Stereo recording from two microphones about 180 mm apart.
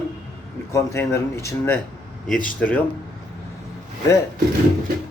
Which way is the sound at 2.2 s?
50° left (ahead or behind).